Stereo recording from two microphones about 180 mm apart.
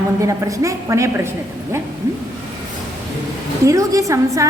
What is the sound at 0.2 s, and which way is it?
A woman's voice, 20° right (ahead or behind).